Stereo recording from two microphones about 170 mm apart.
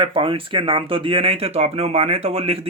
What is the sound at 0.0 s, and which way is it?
Speech, 30° right (ahead or behind).